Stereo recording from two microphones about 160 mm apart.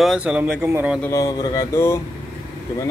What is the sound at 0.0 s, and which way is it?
Speech, 5° right (ahead or behind).